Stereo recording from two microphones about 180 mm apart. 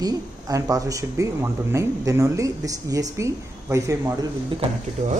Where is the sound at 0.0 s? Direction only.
20° right (ahead or behind).